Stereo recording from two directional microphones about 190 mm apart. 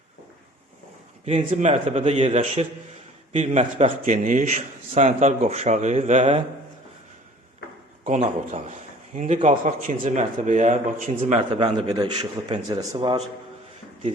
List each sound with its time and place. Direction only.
1.2 s a man's voice: 35° right (ahead or behind)
8.0 s a man's voice: 35° right (ahead or behind)